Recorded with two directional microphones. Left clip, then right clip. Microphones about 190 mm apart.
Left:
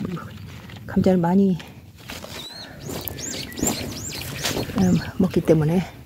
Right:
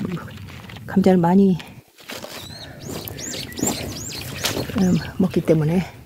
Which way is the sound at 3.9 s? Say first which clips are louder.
Right 1 dB; 25° right (ahead or behind).